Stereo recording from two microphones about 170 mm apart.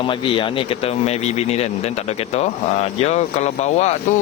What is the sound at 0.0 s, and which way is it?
Speech, 30° left (ahead or behind).